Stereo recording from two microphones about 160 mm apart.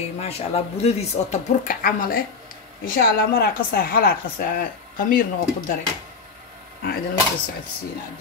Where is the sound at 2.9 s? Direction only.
75° left (ahead or behind).